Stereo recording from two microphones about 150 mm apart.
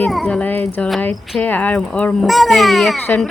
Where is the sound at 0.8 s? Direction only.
Centre (ahead or behind).